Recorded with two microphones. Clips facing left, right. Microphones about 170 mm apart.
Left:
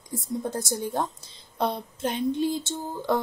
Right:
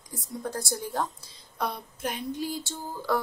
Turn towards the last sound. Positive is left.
turn(degrees=25)  # may be behind; listen again after turning